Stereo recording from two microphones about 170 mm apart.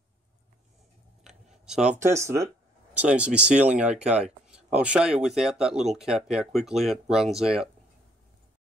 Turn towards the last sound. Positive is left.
turn(degrees=-5)  # may be behind; listen again after turning